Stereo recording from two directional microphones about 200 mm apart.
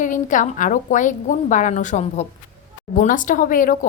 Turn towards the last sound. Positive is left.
turn(degrees=40)  # may be behind; listen again after turning